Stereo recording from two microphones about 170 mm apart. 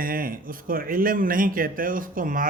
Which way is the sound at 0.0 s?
55° right (ahead or behind).